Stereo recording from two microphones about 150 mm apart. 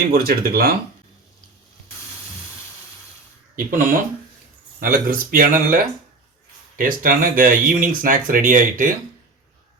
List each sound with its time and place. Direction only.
0.1 s speech: 90° right
3.5 s speech: 65° right (ahead or behind)
4.8 s speech: 75° right (ahead or behind)